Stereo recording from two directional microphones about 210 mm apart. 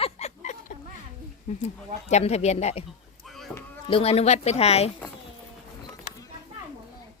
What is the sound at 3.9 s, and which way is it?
Speech, 30° left (ahead or behind).